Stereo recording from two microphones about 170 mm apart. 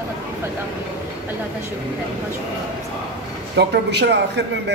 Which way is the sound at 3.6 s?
80° right.